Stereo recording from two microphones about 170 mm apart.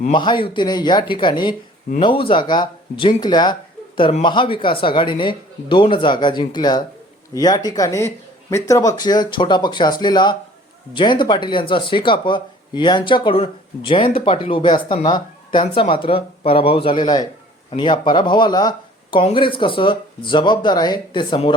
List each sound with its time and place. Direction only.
0.1 s speech: 30° left (ahead or behind)